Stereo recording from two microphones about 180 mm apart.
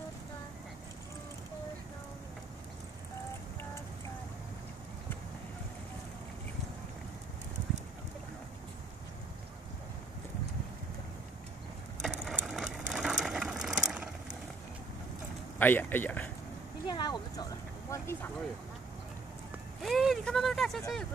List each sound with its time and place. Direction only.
12.0 s ratchet: 5° right (ahead or behind)
15.6 s speech: 10° left (ahead or behind)
16.8 s a sound: 25° left (ahead or behind)
19.8 s vehicle: centre (ahead or behind)